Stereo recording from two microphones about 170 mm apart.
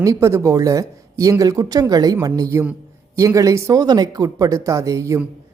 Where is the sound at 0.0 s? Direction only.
20° right (ahead or behind).